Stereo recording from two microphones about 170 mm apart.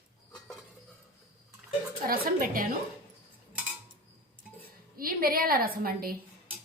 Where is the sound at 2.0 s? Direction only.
55° right (ahead or behind).